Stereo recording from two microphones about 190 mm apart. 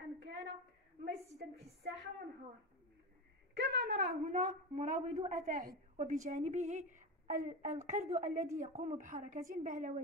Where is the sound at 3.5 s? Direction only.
60° right (ahead or behind).